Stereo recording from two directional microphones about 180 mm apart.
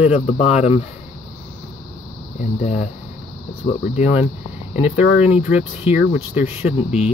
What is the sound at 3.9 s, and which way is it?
Speech, 35° left (ahead or behind).